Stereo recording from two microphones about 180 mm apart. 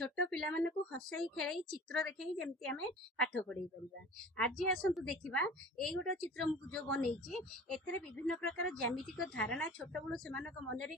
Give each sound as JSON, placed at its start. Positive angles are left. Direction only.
{"t": 0.0, "sound": "a woman's voice", "side_deg": 5}